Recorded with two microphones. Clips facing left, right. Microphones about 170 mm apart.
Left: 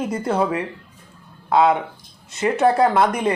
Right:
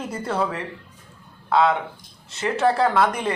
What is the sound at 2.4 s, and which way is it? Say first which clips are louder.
Speech: left 4 dB; 20° left (ahead or behind).